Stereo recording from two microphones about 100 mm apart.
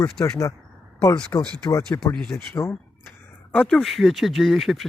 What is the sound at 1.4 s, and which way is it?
Speech, 5° left (ahead or behind).